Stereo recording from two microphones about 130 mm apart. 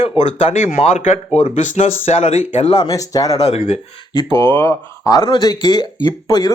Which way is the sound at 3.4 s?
55° left (ahead or behind).